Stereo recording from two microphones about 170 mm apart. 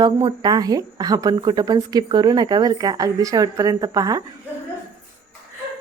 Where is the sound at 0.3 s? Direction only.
25° right (ahead or behind).